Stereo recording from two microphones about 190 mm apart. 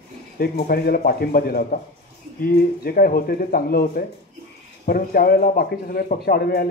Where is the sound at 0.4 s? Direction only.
55° left (ahead or behind).